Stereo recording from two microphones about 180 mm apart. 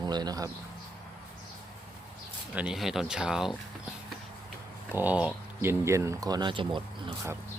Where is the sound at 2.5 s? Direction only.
5° right (ahead or behind).